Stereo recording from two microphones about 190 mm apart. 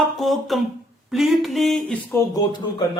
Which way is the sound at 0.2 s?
Centre (ahead or behind).